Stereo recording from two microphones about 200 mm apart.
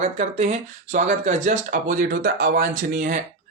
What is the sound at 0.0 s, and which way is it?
Speech, 35° right (ahead or behind).